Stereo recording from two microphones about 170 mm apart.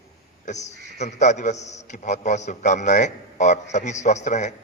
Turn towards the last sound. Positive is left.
turn(degrees=45)  # may be behind; listen again after turning